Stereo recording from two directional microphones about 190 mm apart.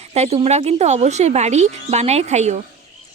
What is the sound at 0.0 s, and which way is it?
Speech, 35° right (ahead or behind).